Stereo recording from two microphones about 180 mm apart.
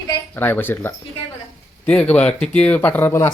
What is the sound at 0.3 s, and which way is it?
Speech, 10° left (ahead or behind).